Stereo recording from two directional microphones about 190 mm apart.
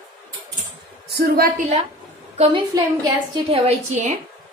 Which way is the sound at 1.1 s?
55° right (ahead or behind).